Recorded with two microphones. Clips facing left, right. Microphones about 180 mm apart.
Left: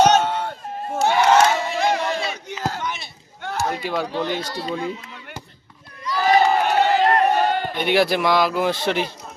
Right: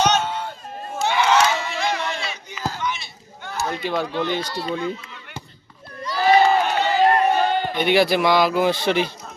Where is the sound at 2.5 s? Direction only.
65° left (ahead or behind).